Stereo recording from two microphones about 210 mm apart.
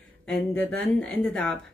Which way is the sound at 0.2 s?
5° left (ahead or behind).